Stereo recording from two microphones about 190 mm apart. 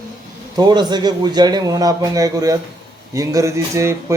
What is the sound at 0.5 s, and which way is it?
A man's voice, 20° right (ahead or behind).